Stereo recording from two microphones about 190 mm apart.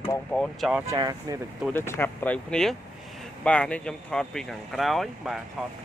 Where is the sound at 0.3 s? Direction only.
Centre (ahead or behind).